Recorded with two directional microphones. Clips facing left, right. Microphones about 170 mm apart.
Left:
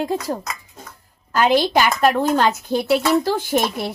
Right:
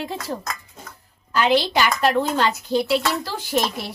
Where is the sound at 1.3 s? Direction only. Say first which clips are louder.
Left 3 dB; 45° left (ahead or behind).